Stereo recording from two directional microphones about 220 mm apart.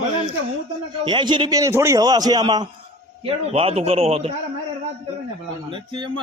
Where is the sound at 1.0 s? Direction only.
20° right (ahead or behind).